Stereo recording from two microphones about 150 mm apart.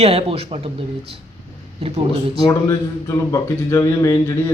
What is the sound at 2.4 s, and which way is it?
Speech, 20° left (ahead or behind).